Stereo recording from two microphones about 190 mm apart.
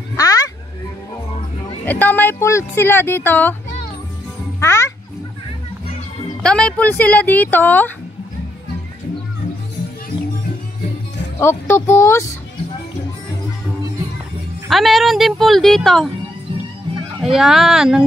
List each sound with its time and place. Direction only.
0.1 s a sound: 20° left (ahead or behind)
1.9 s speech: 10° left (ahead or behind)
4.6 s a child's voice: 15° left (ahead or behind)
6.4 s speech: 5° left (ahead or behind)
11.3 s speech: 10° left (ahead or behind)
14.7 s a woman's voice: centre (ahead or behind)
17.2 s a woman's voice: centre (ahead or behind)